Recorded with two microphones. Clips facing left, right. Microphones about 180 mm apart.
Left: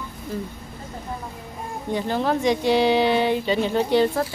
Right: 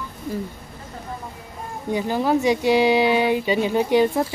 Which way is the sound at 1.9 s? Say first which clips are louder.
Right 2 dB; 10° right (ahead or behind).